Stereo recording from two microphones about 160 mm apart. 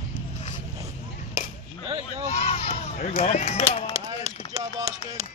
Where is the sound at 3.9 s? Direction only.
20° right (ahead or behind).